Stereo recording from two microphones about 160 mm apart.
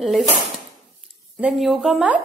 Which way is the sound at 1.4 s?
5° right (ahead or behind).